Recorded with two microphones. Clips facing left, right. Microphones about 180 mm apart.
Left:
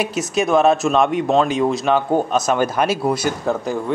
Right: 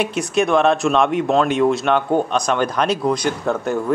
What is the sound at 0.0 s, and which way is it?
Speech, centre (ahead or behind).